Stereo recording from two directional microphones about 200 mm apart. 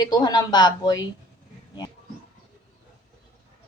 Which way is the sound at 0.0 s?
20° left (ahead or behind).